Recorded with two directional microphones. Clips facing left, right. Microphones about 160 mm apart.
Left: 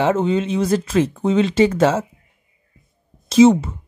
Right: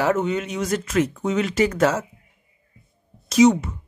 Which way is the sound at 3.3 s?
30° left (ahead or behind).